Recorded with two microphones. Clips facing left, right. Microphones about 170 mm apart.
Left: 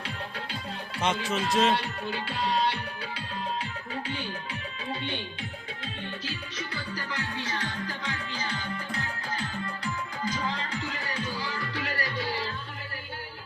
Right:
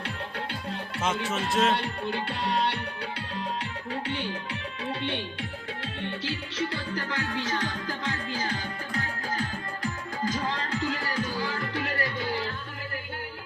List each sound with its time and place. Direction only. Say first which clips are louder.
1.0 s a man's voice: left 1 dB; centre (ahead or behind)
1.8 s music: right 3 dB; 55° right (ahead or behind)
4.9 s music: right 3 dB; 65° right (ahead or behind)
6.6 s music: right 7 dB; 50° right (ahead or behind)
9.8 s music: right 4 dB; 45° right (ahead or behind)